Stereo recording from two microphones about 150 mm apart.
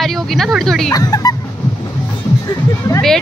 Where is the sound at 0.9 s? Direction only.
25° left (ahead or behind).